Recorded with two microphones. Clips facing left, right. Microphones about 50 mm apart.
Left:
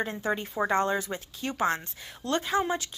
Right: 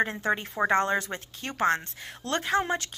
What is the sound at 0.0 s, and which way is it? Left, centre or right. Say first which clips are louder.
A woman's voice: right 3 dB; right.